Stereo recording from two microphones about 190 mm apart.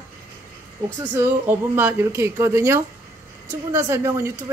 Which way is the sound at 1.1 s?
10° right (ahead or behind).